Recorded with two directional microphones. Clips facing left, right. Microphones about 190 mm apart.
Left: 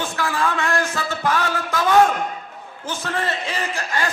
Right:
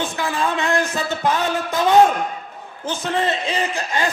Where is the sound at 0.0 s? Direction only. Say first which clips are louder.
Right 1 dB; 20° right (ahead or behind).